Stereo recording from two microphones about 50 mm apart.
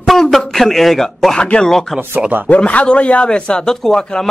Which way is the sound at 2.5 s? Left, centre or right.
Left.